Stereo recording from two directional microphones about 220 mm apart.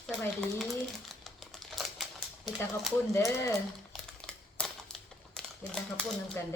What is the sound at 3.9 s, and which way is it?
Crumpling, 5° left (ahead or behind).